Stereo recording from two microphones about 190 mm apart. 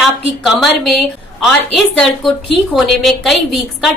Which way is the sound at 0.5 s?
Centre (ahead or behind).